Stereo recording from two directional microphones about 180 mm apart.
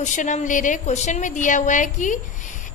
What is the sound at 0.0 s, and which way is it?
A woman's voice, 45° left (ahead or behind).